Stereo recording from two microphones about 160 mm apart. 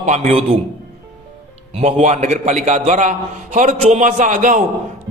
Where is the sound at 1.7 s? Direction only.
50° right (ahead or behind).